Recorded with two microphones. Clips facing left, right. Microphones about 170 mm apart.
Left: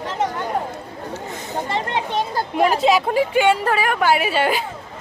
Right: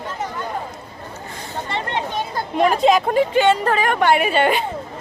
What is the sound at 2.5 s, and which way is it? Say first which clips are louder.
Speech: right 1 dB; 5° left (ahead or behind).